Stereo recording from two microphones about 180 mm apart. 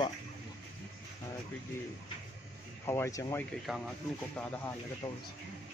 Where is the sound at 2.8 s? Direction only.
15° left (ahead or behind).